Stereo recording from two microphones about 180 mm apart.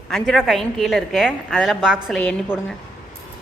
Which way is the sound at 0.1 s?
Centre (ahead or behind).